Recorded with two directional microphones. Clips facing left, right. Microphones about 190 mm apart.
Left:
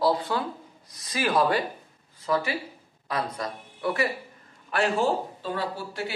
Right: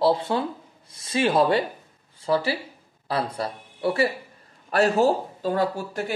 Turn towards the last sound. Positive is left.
turn(degrees=-45)  # may be behind; listen again after turning